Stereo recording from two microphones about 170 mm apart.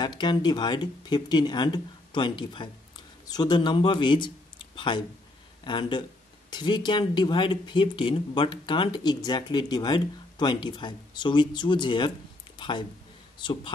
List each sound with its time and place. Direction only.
0.0 s speech: 25° left (ahead or behind)